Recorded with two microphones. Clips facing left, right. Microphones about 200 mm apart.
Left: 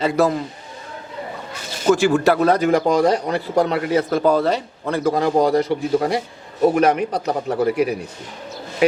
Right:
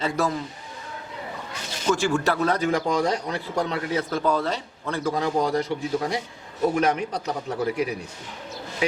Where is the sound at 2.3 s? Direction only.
70° left (ahead or behind).